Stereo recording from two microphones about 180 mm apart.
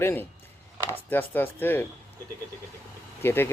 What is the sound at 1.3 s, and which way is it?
Speech, 10° left (ahead or behind).